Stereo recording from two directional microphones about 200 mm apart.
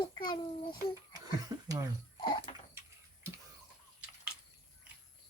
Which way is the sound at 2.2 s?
25° left (ahead or behind).